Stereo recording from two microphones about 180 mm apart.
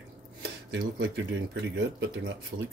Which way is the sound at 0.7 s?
75° right (ahead or behind).